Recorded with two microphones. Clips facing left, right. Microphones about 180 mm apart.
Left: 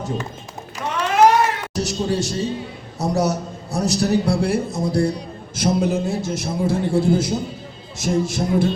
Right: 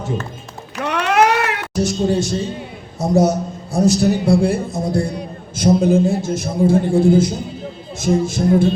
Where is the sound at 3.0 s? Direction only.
55° right (ahead or behind).